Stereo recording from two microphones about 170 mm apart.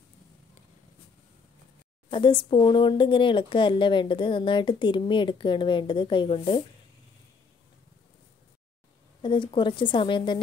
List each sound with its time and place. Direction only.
2.0 s speech: 30° left (ahead or behind)
9.2 s speech: 30° left (ahead or behind)